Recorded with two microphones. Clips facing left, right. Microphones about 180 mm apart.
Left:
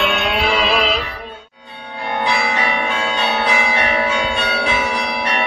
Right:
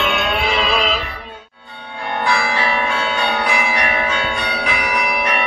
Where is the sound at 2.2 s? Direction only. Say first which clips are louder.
Right 1 dB; 20° left (ahead or behind).